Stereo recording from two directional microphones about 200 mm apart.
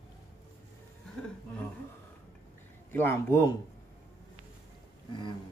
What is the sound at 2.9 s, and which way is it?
Speech, 10° left (ahead or behind).